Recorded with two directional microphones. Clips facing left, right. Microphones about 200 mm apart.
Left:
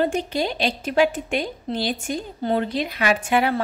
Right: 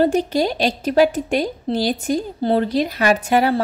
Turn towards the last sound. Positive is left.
turn(degrees=-40)  # may be behind; listen again after turning